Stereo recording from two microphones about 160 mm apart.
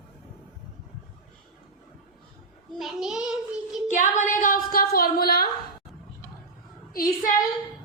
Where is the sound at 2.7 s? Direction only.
Centre (ahead or behind).